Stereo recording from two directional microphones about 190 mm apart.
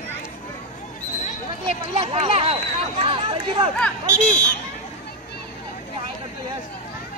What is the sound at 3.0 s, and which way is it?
Speech, 30° right (ahead or behind).